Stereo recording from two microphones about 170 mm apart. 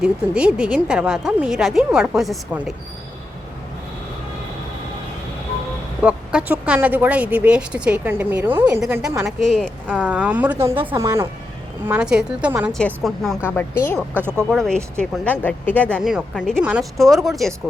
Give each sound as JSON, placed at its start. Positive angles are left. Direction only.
{"t": 0.0, "sound": "speech", "side_deg": -5}
{"t": 6.0, "sound": "speech", "side_deg": -10}
{"t": 9.8, "sound": "speech", "side_deg": -10}
{"t": 11.9, "sound": "speech", "side_deg": -5}
{"t": 13.6, "sound": "speech", "side_deg": 15}
{"t": 14.1, "sound": "speech", "side_deg": -10}
{"t": 14.5, "sound": "speech", "side_deg": 5}
{"t": 16.0, "sound": "speech", "side_deg": -5}